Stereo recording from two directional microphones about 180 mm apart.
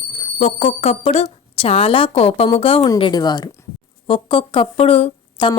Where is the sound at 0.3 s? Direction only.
40° left (ahead or behind).